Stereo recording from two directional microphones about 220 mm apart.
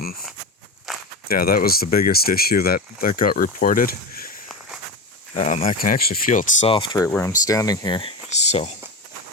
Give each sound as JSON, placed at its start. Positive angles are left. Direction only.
{"t": 0.9, "sound": "walk", "side_deg": 0}
{"t": 1.3, "sound": "speech", "side_deg": 40}
{"t": 5.3, "sound": "speech", "side_deg": 30}
{"t": 8.3, "sound": "a sound", "side_deg": 30}